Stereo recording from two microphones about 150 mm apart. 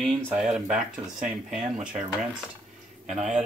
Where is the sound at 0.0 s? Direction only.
5° left (ahead or behind).